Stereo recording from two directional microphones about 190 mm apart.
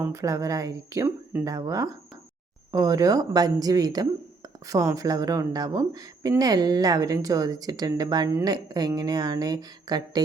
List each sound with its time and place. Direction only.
0.0 s a woman's voice: 15° right (ahead or behind)